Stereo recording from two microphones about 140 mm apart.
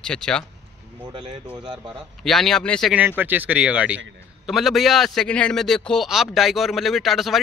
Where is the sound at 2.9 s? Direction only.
10° right (ahead or behind).